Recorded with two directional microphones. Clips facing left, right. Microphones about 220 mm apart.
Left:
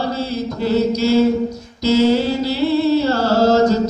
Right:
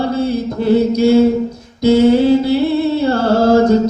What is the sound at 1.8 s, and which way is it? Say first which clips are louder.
Music: right 5 dB; 55° right (ahead or behind).